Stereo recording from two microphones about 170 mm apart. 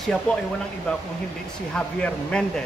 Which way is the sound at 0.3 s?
5° left (ahead or behind).